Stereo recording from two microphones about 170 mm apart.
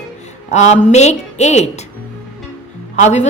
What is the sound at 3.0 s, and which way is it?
Speech, 40° left (ahead or behind).